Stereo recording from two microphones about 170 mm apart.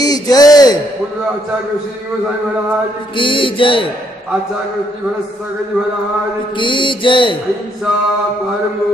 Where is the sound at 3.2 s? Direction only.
30° left (ahead or behind).